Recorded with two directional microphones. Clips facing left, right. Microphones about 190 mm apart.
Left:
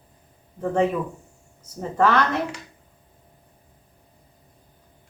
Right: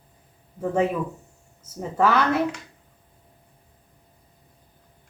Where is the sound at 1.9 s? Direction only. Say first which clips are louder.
Left 1 dB; 5° right (ahead or behind).